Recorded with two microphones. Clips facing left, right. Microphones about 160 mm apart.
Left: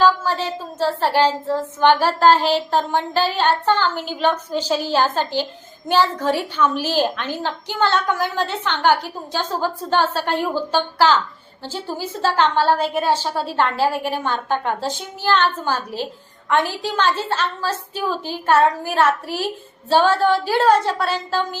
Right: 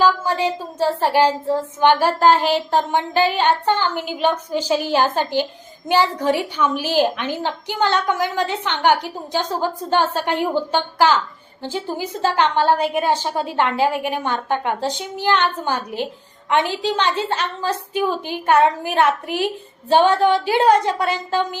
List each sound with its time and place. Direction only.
0.0 s child singing: 15° right (ahead or behind)